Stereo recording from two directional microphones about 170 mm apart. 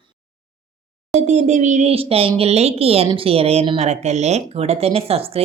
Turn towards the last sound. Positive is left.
turn(degrees=-35)  # may be behind; listen again after turning